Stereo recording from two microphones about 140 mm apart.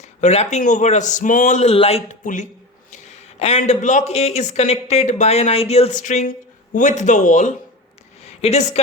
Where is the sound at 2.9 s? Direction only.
50° left (ahead or behind).